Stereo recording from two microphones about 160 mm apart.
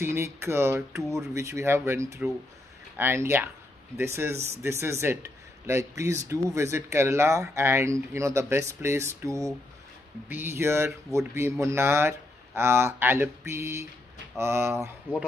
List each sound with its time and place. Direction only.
0.0 s speech: 15° right (ahead or behind)